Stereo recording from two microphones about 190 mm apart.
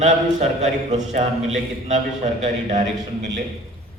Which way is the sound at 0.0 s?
35° right (ahead or behind).